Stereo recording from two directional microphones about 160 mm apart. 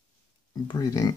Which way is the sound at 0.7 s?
25° left (ahead or behind).